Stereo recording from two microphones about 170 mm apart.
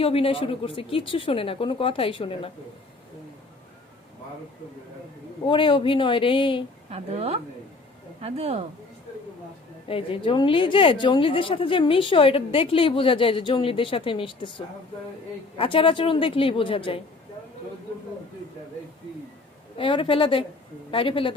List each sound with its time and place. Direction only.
0.0 s a woman's voice: 35° left (ahead or behind)
5.5 s speech: 30° left (ahead or behind)
6.9 s a woman's voice: 35° right (ahead or behind)
9.9 s a woman's voice: 30° left (ahead or behind)
15.5 s a woman's voice: 30° left (ahead or behind)
19.7 s a woman's voice: 30° left (ahead or behind)